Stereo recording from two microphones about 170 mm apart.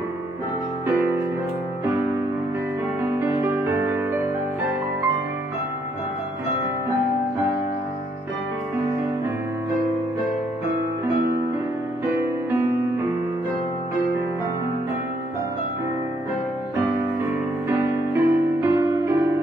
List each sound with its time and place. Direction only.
3.2 s music: 15° right (ahead or behind)
12.2 s music: 15° right (ahead or behind)
17.6 s music: 15° right (ahead or behind)